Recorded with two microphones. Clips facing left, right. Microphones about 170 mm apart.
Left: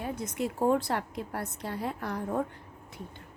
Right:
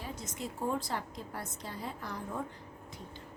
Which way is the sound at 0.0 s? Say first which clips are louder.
Left 8 dB; 55° left (ahead or behind).